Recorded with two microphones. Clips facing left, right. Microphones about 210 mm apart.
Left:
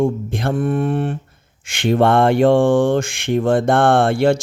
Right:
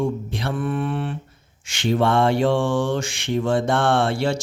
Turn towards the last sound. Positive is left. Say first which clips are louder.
# left 6 dB
turn(degrees=55)  # may be behind; listen again after turning